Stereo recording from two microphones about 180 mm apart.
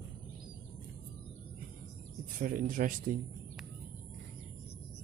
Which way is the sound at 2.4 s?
50° right (ahead or behind).